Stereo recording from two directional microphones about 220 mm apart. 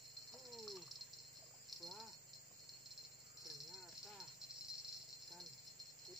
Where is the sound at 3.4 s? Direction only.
Centre (ahead or behind).